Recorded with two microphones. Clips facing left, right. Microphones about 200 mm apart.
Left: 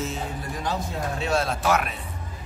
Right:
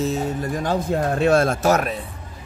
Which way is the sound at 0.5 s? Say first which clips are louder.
Right 7 dB; 50° right (ahead or behind).